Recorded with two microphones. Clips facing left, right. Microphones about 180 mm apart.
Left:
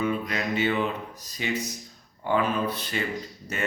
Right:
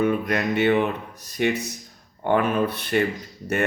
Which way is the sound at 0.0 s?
55° right (ahead or behind).